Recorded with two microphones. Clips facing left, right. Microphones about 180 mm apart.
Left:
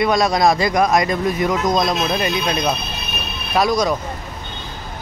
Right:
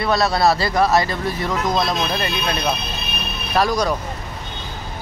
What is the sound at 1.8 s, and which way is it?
Speech, 15° left (ahead or behind).